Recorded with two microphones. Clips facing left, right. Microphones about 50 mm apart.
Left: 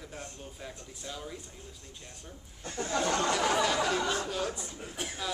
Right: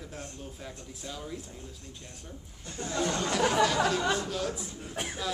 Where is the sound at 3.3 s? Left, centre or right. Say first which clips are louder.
Right 2 dB; centre.